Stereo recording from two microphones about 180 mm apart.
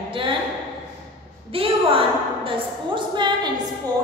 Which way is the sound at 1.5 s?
30° right (ahead or behind).